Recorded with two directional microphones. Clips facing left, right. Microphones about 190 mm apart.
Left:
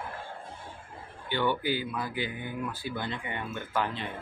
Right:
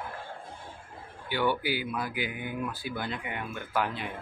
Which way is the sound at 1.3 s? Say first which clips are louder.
Even; 10° right (ahead or behind).